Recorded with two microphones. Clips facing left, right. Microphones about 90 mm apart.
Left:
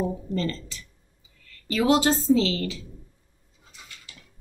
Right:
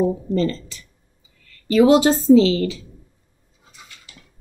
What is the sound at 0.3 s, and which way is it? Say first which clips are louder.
Speech: right 7 dB; 25° right (ahead or behind).